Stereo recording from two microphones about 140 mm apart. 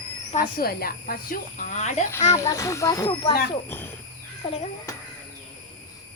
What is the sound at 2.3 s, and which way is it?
Speech, 20° left (ahead or behind).